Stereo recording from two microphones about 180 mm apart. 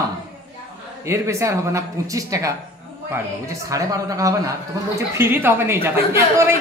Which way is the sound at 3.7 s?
20° right (ahead or behind).